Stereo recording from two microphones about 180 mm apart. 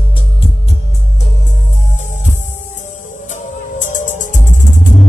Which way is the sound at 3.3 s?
45° left (ahead or behind).